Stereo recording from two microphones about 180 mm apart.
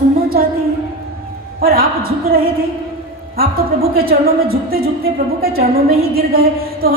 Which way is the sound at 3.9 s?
55° right (ahead or behind).